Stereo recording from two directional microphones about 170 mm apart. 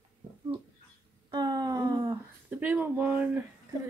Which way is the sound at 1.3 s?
25° right (ahead or behind).